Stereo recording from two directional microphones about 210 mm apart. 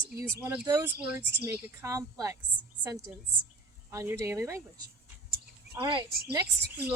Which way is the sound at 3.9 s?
15° right (ahead or behind).